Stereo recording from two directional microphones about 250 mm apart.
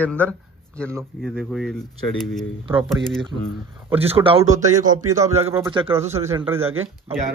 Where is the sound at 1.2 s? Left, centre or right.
Centre.